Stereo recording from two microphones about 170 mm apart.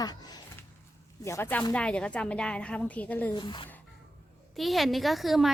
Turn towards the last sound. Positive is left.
turn(degrees=0)  # may be behind; listen again after turning